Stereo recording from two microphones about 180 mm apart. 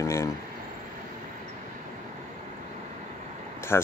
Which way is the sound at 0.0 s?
15° left (ahead or behind).